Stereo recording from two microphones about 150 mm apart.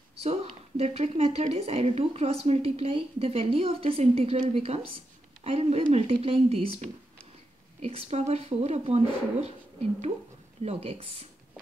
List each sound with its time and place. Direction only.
0.2 s a woman's voice: 45° right (ahead or behind)
7.8 s a woman's voice: 45° right (ahead or behind)
10.6 s a woman's voice: 45° right (ahead or behind)